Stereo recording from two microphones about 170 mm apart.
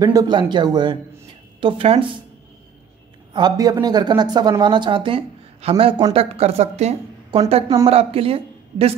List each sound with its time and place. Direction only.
0.0 s speech: 20° right (ahead or behind)
3.3 s speech: 25° right (ahead or behind)